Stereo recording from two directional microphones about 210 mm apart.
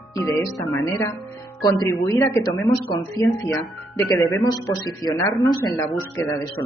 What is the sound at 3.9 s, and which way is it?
Speech, 15° left (ahead or behind).